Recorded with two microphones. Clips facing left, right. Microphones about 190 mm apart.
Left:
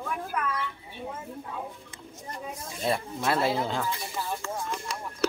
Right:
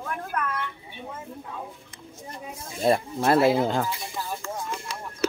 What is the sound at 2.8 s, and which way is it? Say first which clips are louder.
Speech: right 6 dB; 45° right (ahead or behind).